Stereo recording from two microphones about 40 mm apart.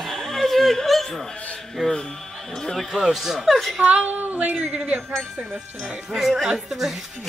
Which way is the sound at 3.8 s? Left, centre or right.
Right.